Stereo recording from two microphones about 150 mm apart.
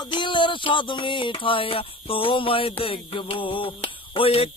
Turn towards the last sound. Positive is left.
turn(degrees=40)  # may be behind; listen again after turning